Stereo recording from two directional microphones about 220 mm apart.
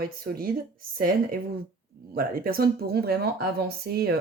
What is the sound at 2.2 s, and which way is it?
Speech, 40° right (ahead or behind).